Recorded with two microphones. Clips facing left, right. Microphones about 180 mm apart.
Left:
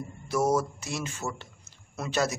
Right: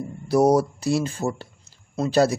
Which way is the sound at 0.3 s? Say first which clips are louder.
Right 8 dB; 35° right (ahead or behind).